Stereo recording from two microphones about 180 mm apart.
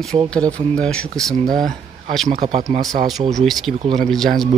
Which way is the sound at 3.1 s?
Centre (ahead or behind).